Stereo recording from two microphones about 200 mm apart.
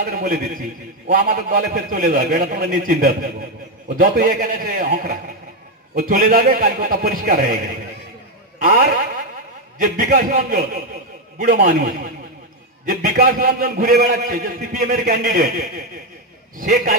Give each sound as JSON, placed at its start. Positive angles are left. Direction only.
{"t": 0.0, "sound": "a man's voice", "side_deg": -45}